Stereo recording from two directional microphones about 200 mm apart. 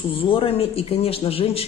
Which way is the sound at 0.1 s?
25° left (ahead or behind).